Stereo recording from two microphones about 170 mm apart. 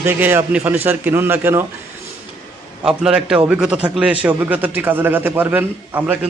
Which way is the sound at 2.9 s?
5° right (ahead or behind).